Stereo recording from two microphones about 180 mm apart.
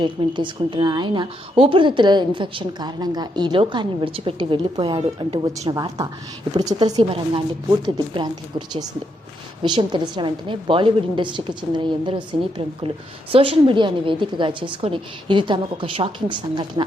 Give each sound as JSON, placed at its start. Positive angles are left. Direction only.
{"t": 0.0, "sound": "a woman's voice", "side_deg": -25}
{"t": 5.7, "sound": "a woman's voice", "side_deg": -20}